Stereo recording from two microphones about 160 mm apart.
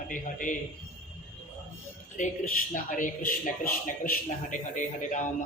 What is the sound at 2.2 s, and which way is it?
A man's voice, 50° left (ahead or behind).